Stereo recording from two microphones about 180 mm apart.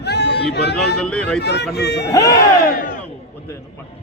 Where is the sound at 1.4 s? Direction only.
70° left (ahead or behind).